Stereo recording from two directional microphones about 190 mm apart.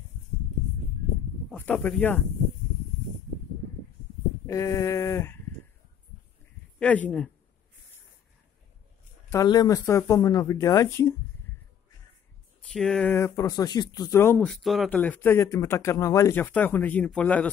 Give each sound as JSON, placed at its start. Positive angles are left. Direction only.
{"t": 1.5, "sound": "speech", "side_deg": 10}
{"t": 4.5, "sound": "speech", "side_deg": 15}
{"t": 6.8, "sound": "speech", "side_deg": 5}
{"t": 9.3, "sound": "speech", "side_deg": 20}
{"t": 12.7, "sound": "speech", "side_deg": 5}
{"t": 14.5, "sound": "speech", "side_deg": 0}